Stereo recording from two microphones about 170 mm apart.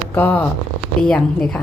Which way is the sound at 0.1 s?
10° left (ahead or behind).